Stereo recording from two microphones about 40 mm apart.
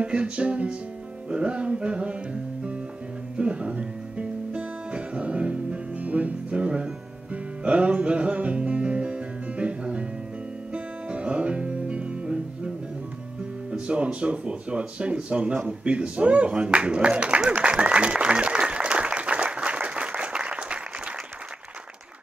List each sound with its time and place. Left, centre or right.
0.0 s speech: right
3.3 s music: right
13.7 s speech: right
17.5 s applause: right